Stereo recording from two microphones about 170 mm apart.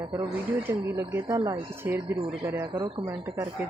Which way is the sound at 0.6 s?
15° right (ahead or behind).